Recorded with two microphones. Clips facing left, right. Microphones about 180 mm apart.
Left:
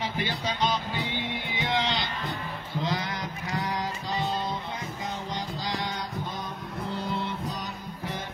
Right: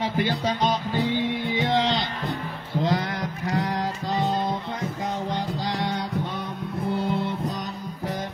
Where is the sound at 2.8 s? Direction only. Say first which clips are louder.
Right 6 dB; 55° right (ahead or behind).